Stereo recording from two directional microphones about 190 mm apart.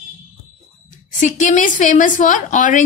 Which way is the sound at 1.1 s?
40° left (ahead or behind).